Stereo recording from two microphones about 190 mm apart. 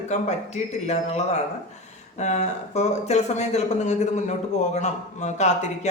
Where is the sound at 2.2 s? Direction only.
35° left (ahead or behind).